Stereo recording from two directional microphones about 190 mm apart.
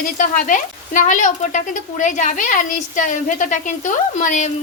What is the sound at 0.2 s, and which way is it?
Speech, 45° left (ahead or behind).